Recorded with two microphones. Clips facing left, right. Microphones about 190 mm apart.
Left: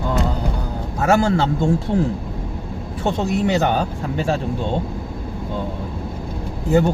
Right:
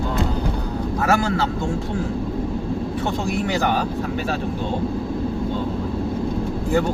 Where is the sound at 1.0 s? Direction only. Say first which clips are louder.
Left 5 dB; 25° left (ahead or behind).